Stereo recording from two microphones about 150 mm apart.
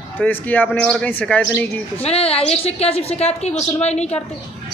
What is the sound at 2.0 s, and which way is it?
A woman's voice, 40° left (ahead or behind).